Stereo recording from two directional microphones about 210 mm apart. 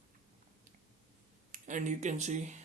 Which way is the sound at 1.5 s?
35° right (ahead or behind).